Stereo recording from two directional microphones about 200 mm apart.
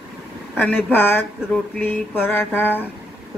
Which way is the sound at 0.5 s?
10° left (ahead or behind).